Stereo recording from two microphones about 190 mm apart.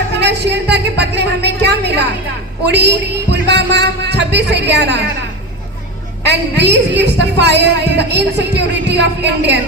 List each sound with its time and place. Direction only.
0.2 s speech: 60° right (ahead or behind)
6.2 s speech: 60° right (ahead or behind)